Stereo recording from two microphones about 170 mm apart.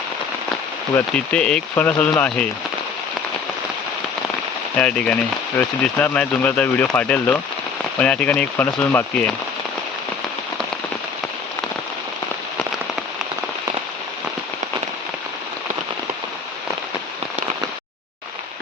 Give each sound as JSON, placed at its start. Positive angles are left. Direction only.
{"t": 0.9, "sound": "speech", "side_deg": 5}
{"t": 4.8, "sound": "speech", "side_deg": 5}